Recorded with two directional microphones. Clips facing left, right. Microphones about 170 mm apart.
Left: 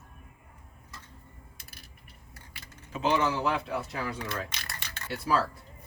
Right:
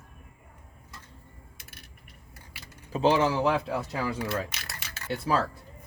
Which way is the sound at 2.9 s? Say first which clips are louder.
Right 4 dB; 30° right (ahead or behind).